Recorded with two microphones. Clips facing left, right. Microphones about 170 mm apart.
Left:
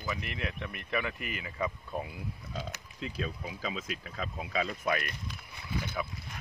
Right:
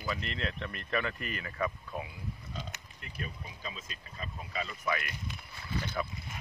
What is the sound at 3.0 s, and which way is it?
Speech, 90° left.